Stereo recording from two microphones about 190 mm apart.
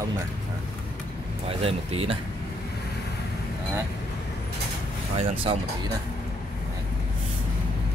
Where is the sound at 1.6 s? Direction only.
30° right (ahead or behind).